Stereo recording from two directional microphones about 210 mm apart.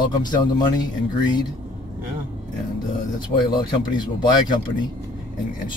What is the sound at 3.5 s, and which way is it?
Speech, 20° left (ahead or behind).